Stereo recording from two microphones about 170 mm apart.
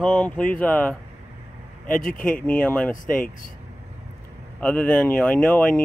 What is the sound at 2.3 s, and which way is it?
Speech, 10° left (ahead or behind).